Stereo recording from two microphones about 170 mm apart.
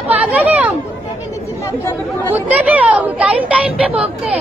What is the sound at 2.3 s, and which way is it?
Speech, 10° right (ahead or behind).